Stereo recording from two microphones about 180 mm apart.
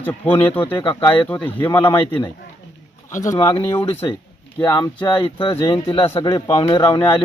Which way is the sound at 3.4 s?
30° left (ahead or behind).